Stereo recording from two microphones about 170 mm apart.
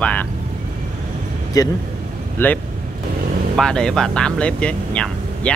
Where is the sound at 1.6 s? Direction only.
20° left (ahead or behind).